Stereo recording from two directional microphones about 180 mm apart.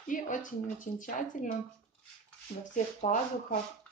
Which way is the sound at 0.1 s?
45° left (ahead or behind).